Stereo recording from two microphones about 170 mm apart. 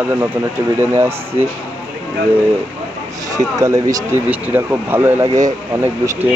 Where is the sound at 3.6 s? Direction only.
20° right (ahead or behind).